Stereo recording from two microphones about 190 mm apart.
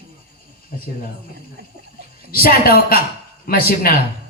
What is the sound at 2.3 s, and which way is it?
Speech, 50° left (ahead or behind).